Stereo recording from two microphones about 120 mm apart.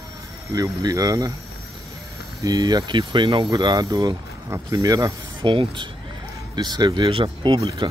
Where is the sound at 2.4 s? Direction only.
30° right (ahead or behind).